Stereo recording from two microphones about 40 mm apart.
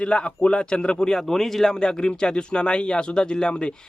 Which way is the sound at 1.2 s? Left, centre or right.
Centre.